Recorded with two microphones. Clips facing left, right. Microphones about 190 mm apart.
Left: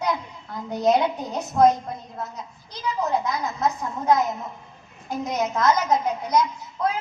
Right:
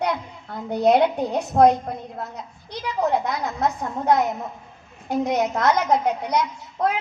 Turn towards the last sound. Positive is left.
turn(degrees=-65)  # may be behind; listen again after turning